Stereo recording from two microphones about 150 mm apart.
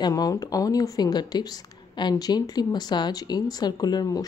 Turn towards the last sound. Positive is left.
turn(degrees=25)  # may be behind; listen again after turning